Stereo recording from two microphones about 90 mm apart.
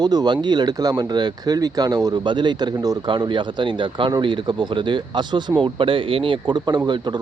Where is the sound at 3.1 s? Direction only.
65° right (ahead or behind).